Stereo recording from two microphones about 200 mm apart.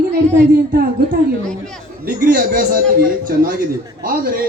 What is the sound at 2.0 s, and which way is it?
A man's voice, 45° right (ahead or behind).